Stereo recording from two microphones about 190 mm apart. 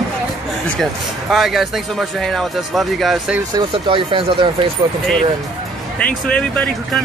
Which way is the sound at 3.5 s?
25° right (ahead or behind).